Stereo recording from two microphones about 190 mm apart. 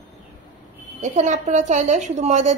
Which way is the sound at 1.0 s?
40° right (ahead or behind).